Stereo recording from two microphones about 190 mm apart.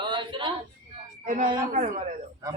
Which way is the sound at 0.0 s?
25° right (ahead or behind).